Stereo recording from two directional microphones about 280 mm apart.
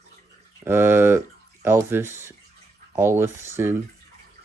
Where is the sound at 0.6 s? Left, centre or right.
Centre.